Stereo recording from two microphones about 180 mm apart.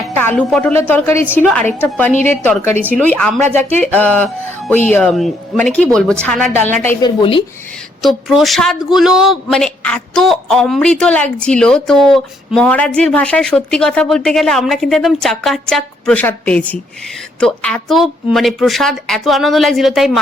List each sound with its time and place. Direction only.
0.2 s a woman's voice: 10° left (ahead or behind)
7.0 s speech: 25° left (ahead or behind)
8.0 s a man's voice: centre (ahead or behind)